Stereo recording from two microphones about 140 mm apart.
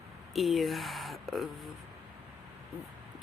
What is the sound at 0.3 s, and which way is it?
Speech, centre (ahead or behind).